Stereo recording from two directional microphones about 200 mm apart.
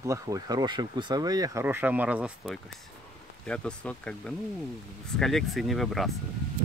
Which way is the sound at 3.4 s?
5° left (ahead or behind).